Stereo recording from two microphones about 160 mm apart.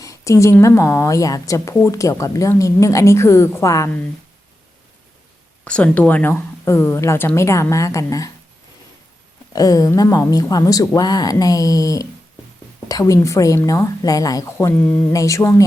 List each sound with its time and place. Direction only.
0.0 s a woman's voice: 20° left (ahead or behind)
5.6 s speech: 10° left (ahead or behind)
9.5 s a woman's voice: 20° left (ahead or behind)